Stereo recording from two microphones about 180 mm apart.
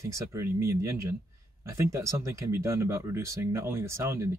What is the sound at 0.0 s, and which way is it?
Speech, 15° right (ahead or behind).